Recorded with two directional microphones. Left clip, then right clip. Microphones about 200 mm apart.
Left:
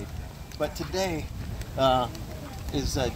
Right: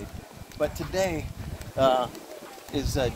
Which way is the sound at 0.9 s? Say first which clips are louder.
Right 2 dB; 35° right (ahead or behind).